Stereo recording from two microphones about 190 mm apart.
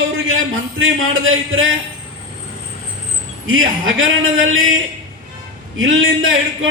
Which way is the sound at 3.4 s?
90° right.